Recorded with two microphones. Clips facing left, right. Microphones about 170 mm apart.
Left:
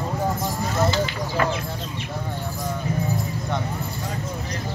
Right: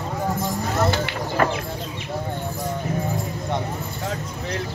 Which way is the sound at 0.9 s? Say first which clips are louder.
Even; 50° right (ahead or behind).